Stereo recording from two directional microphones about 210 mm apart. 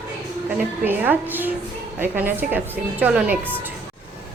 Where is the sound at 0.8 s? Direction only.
10° right (ahead or behind).